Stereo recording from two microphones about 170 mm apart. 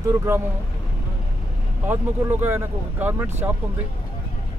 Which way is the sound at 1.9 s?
15° right (ahead or behind).